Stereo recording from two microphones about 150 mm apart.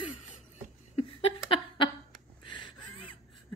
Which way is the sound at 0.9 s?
40° left (ahead or behind).